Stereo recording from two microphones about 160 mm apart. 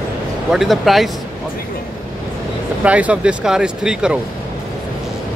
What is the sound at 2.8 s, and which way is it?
Speech, 10° right (ahead or behind).